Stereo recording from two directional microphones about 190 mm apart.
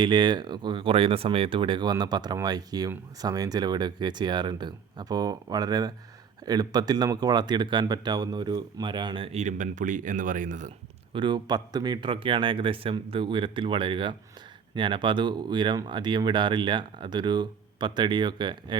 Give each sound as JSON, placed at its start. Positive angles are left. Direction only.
{"t": 0.0, "sound": "speech", "side_deg": -25}
{"t": 11.1, "sound": "speech", "side_deg": -25}